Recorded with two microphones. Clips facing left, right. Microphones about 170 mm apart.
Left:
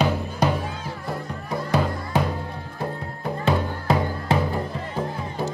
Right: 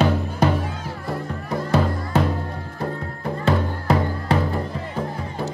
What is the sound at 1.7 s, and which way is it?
Music, 15° left (ahead or behind).